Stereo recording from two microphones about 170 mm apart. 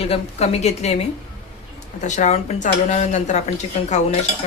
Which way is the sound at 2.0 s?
45° left (ahead or behind).